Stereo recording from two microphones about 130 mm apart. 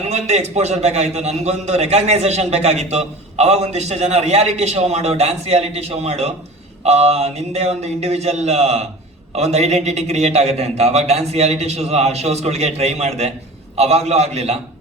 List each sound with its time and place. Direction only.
0.0 s a man's voice: 55° right (ahead or behind)